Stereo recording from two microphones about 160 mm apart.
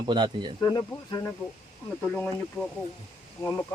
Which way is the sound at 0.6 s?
20° left (ahead or behind).